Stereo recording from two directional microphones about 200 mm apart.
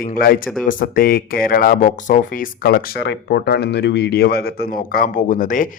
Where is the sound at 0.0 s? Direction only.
45° left (ahead or behind).